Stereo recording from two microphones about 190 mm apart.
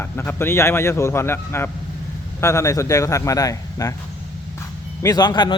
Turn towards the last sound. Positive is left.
turn(degrees=25)  # may be behind; listen again after turning